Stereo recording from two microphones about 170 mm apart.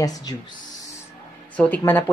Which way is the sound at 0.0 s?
20° left (ahead or behind).